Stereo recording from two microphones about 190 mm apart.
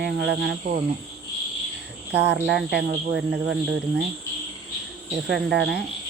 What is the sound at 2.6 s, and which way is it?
Speech, 60° right (ahead or behind).